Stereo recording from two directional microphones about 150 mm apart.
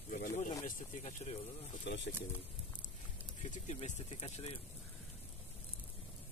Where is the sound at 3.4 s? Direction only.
50° left (ahead or behind).